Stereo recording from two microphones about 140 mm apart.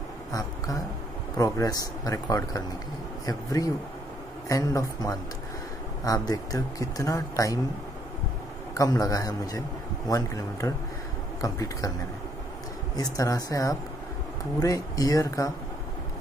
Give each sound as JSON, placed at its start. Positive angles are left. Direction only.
{"t": 0.3, "sound": "a sound", "side_deg": 25}
{"t": 1.3, "sound": "speech", "side_deg": 25}
{"t": 8.7, "sound": "speech", "side_deg": 25}
{"t": 12.9, "sound": "speech", "side_deg": 25}